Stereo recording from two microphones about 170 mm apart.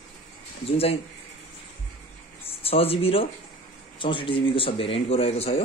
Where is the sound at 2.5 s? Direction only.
35° left (ahead or behind).